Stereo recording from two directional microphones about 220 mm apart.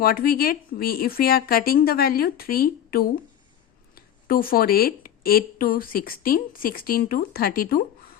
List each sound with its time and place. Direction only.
0.0 s a woman's voice: 40° left (ahead or behind)